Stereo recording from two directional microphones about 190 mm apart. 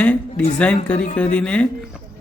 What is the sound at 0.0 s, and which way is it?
A man's voice, 5° left (ahead or behind).